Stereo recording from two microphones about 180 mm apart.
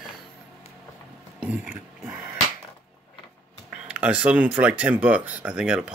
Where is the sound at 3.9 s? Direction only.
10° right (ahead or behind).